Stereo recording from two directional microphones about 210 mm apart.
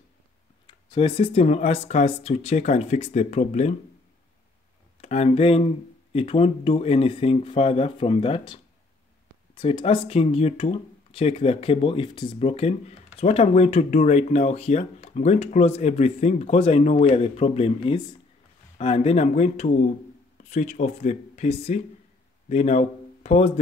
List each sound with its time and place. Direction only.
0.7 s speech: 25° left (ahead or behind)
5.0 s speech: 30° left (ahead or behind)
9.6 s speech: 25° left (ahead or behind)